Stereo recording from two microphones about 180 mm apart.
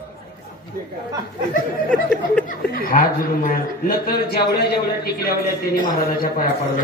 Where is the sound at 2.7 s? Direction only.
50° left (ahead or behind).